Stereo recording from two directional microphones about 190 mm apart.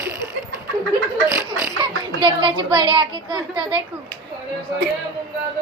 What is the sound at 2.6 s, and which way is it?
A woman's voice, 25° right (ahead or behind).